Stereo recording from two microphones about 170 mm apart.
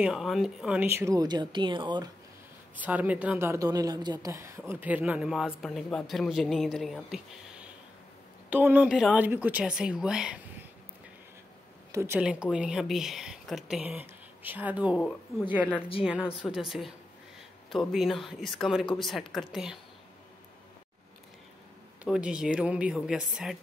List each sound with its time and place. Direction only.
0.0 s speech: centre (ahead or behind); by 2.0 s 25° right (ahead or behind)
2.7 s speech: 10° right (ahead or behind)
11.9 s speech: 15° right (ahead or behind)
12.2 s speech: 5° right (ahead or behind)
16.0 s speech: 5° right (ahead or behind)
22.0 s speech: 5° right (ahead or behind)